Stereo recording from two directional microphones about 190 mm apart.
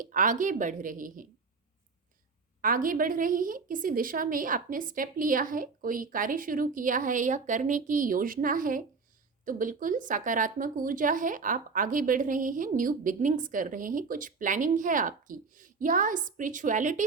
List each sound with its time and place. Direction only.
0.0 s a woman's voice: 45° right (ahead or behind)
2.6 s a woman's voice: 45° right (ahead or behind)